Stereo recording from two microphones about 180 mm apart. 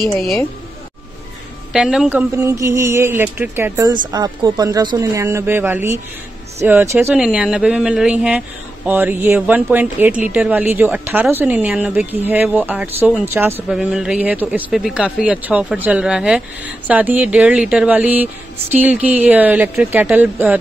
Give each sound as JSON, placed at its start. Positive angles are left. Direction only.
{"t": 0.0, "sound": "speech", "side_deg": 0}
{"t": 1.7, "sound": "speech", "side_deg": -5}
{"t": 7.2, "sound": "speech", "side_deg": 0}